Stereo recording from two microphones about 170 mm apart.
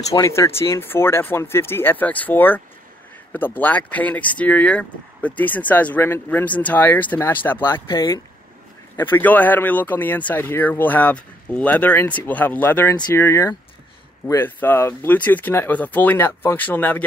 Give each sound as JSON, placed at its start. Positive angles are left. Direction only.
{"t": 0.1, "sound": "speech", "side_deg": 20}
{"t": 7.9, "sound": "speech", "side_deg": 20}
{"t": 12.9, "sound": "speech", "side_deg": 25}